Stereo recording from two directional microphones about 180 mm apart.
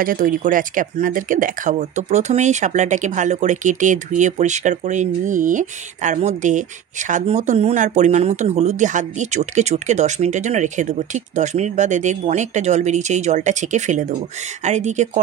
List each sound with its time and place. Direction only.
0.0 s speech: 50° right (ahead or behind)